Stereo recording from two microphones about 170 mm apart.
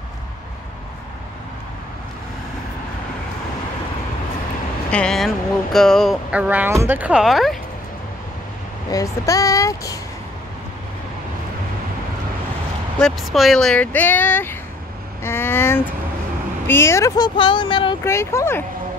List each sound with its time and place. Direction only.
4.9 s speech: 5° left (ahead or behind)
8.9 s speech: 20° left (ahead or behind)
13.0 s speech: centre (ahead or behind); by 17.3 s 20° left (ahead or behind)
17.4 s speech: 30° left (ahead or behind)
18.0 s speech: 15° left (ahead or behind)